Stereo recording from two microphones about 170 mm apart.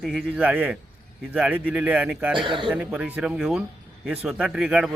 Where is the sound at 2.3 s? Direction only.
30° right (ahead or behind).